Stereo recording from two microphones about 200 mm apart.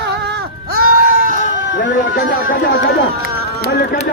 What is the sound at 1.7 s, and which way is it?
Speech, 60° left (ahead or behind).